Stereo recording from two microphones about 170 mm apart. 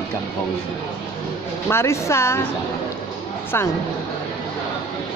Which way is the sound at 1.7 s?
15° left (ahead or behind).